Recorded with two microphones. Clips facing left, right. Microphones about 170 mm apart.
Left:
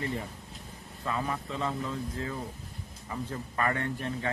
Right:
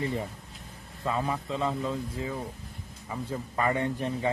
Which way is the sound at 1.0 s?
20° right (ahead or behind).